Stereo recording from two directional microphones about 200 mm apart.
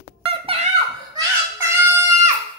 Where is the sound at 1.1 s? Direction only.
15° right (ahead or behind).